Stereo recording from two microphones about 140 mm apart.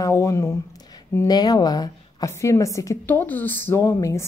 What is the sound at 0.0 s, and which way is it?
A woman's voice, 20° left (ahead or behind).